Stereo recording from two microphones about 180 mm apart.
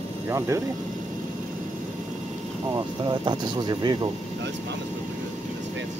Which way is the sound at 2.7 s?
25° right (ahead or behind).